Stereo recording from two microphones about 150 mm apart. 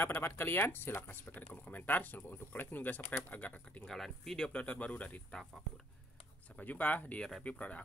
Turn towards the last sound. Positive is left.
turn(degrees=10)  # may be behind; listen again after turning